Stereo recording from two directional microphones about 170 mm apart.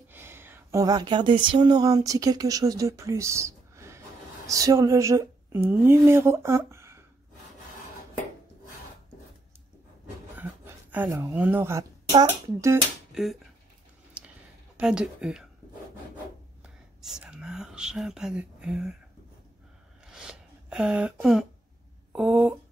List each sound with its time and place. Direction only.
0.1 s a woman's voice: 15° right (ahead or behind)
10.3 s a sound: 10° right (ahead or behind)
11.3 s speech: 10° right (ahead or behind)
13.1 s speech: centre (ahead or behind)
14.2 s a sound: 5° right (ahead or behind)
14.8 s speech: 5° right (ahead or behind)
16.6 s whispering: 5° right (ahead or behind)
20.1 s a sound: 5° right (ahead or behind)
22.1 s speech: 5° right (ahead or behind)